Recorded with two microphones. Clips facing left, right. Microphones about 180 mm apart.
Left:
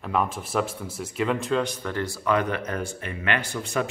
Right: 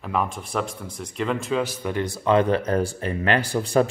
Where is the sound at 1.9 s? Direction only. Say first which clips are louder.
Right 5 dB; 20° right (ahead or behind); by 3.9 s 35° right (ahead or behind).